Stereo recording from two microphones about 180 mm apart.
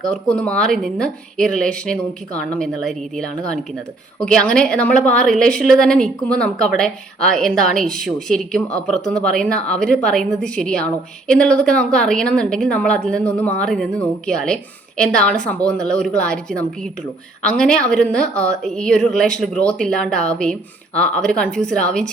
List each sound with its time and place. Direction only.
0.1 s a woman's voice: 5° left (ahead or behind)